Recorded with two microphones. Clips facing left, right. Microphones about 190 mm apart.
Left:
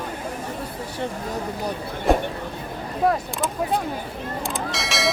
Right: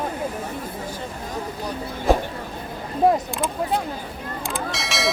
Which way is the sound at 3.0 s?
25° right (ahead or behind).